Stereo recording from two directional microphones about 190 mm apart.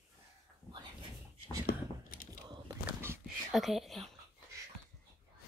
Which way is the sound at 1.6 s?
50° left (ahead or behind).